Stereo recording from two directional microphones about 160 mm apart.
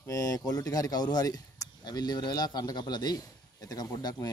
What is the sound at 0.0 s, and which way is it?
Speech, 20° left (ahead or behind).